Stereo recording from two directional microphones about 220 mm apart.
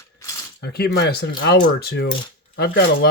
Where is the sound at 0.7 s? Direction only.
45° left (ahead or behind).